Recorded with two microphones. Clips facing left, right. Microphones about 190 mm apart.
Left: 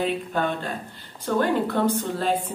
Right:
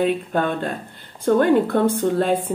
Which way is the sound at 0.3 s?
50° right (ahead or behind).